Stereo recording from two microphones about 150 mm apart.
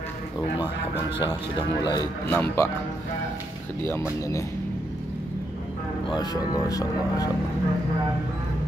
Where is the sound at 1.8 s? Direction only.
25° left (ahead or behind).